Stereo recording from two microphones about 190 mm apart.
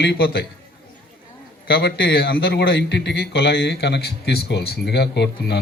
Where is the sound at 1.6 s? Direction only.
60° left (ahead or behind).